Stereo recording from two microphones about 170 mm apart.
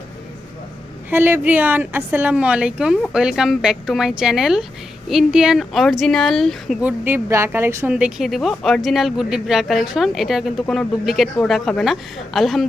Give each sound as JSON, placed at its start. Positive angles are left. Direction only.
{"t": 1.1, "sound": "a woman's voice", "side_deg": -10}
{"t": 6.8, "sound": "speech", "side_deg": -10}